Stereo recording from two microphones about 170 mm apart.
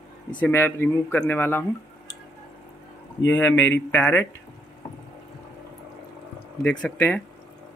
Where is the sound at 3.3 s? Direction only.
10° left (ahead or behind).